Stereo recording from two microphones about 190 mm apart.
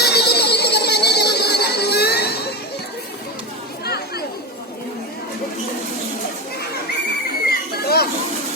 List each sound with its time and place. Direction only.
0.0 s music: 60° left (ahead or behind)
3.8 s chatter: 55° left (ahead or behind)
7.4 s a sound: 55° left (ahead or behind)